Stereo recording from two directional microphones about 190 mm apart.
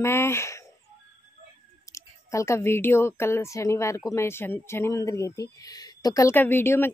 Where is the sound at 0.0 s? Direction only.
15° left (ahead or behind).